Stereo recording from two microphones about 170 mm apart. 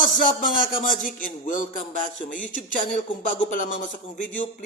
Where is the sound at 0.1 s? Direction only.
55° left (ahead or behind).